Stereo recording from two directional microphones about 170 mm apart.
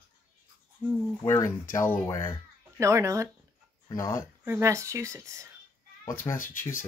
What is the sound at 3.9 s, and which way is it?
Speech, 20° left (ahead or behind).